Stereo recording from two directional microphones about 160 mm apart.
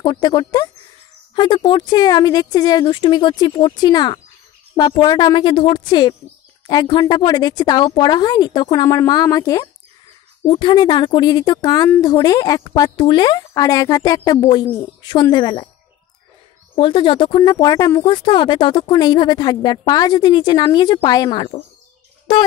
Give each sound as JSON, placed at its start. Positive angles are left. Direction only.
{"t": 0.0, "sound": "speech", "side_deg": 25}
{"t": 16.7, "sound": "speech", "side_deg": 30}